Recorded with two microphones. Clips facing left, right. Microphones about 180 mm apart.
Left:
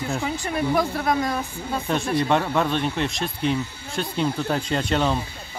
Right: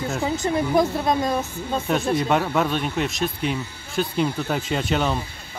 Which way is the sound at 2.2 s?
5° right (ahead or behind).